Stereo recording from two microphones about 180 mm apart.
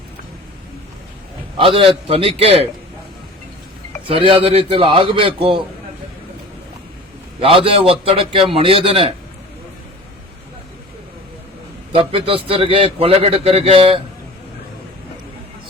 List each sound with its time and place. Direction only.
1.5 s a man's voice: 30° right (ahead or behind)
4.0 s a man's voice: 30° right (ahead or behind)
7.3 s a man's voice: 30° right (ahead or behind)
11.9 s a man's voice: 30° right (ahead or behind)